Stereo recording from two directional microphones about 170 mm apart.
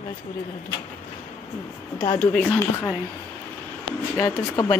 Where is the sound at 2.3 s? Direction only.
10° left (ahead or behind).